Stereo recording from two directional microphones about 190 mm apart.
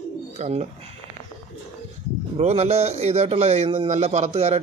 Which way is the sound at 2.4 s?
35° right (ahead or behind).